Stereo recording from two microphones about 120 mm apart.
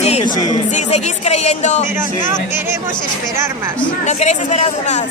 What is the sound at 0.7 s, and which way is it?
Speech, 70° left (ahead or behind).